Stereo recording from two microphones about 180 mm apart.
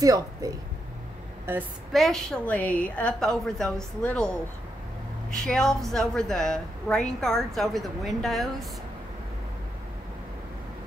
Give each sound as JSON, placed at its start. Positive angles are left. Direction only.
{"t": 0.0, "sound": "speech", "side_deg": -20}
{"t": 1.9, "sound": "a woman's voice", "side_deg": 0}
{"t": 5.3, "sound": "a woman's voice", "side_deg": 5}